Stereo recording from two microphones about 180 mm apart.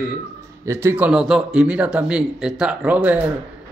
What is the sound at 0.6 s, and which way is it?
Speech, 10° right (ahead or behind).